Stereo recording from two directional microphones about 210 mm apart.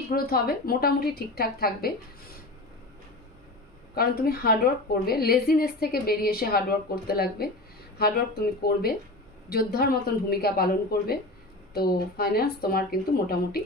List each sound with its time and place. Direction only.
0.1 s a woman's voice: 45° left (ahead or behind)
3.9 s a woman's voice: 45° left (ahead or behind)